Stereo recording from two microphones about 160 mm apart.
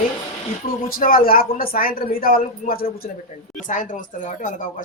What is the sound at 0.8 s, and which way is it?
A man's voice, 65° left (ahead or behind).